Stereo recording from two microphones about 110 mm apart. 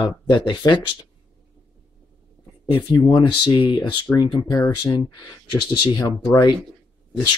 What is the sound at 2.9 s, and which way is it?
Speech, 45° left (ahead or behind).